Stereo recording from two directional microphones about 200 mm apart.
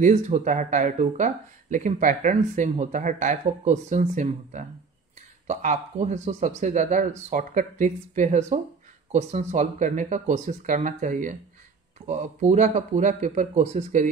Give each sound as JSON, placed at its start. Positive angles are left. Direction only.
{"t": 0.0, "sound": "speech", "side_deg": -35}